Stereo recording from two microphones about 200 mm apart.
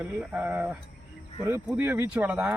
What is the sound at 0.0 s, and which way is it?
Speech, 10° right (ahead or behind).